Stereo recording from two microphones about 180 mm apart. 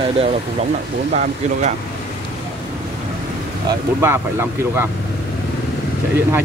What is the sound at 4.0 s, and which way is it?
Speech, 15° right (ahead or behind).